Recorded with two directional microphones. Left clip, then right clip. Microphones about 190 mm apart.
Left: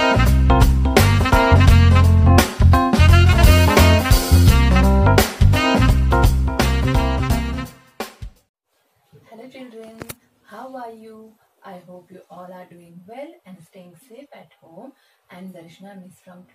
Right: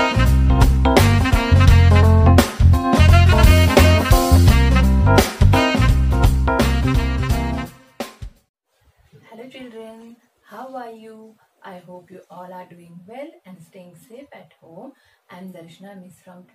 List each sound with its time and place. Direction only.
0.0 s music: centre (ahead or behind)